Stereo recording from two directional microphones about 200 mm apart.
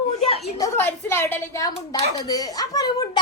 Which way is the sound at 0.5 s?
15° left (ahead or behind).